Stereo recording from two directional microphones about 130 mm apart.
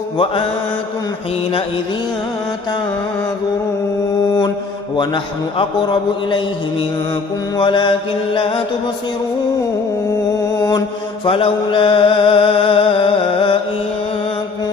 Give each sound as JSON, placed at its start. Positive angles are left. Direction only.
{"t": 4.9, "sound": "music", "side_deg": 40}
{"t": 7.5, "sound": "music", "side_deg": 40}
{"t": 11.2, "sound": "music", "side_deg": 45}